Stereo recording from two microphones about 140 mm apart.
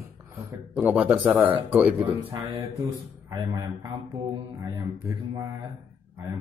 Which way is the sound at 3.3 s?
30° right (ahead or behind).